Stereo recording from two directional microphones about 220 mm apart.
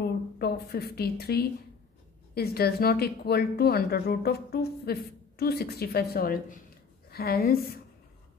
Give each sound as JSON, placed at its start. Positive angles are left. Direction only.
{"t": 0.0, "sound": "a woman's voice", "side_deg": 45}